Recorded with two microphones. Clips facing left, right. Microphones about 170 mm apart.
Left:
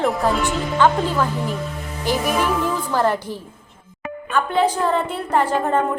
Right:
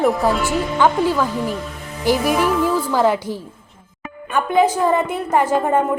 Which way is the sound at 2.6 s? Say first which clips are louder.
Right 3 dB; 10° right (ahead or behind).